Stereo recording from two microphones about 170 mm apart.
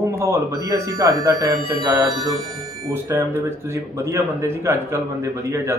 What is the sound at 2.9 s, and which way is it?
Speech, 15° right (ahead or behind).